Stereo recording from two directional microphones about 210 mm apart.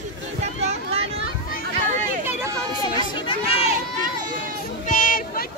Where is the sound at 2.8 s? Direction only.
20° left (ahead or behind).